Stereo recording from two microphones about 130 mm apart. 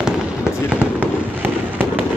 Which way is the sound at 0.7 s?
15° right (ahead or behind).